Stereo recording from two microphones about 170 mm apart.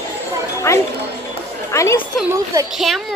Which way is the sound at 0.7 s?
15° left (ahead or behind).